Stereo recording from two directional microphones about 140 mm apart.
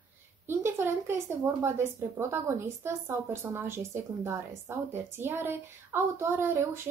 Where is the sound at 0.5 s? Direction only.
15° right (ahead or behind).